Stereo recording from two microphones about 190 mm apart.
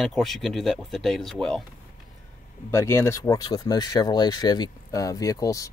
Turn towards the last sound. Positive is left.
turn(degrees=15)  # may be behind; listen again after turning